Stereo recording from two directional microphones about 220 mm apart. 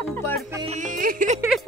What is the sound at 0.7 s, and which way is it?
Music, 35° right (ahead or behind).